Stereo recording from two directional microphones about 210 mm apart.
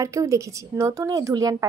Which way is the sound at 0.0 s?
15° right (ahead or behind).